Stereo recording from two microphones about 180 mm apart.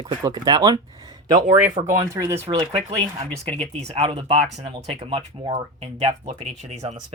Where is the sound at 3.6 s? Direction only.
35° right (ahead or behind).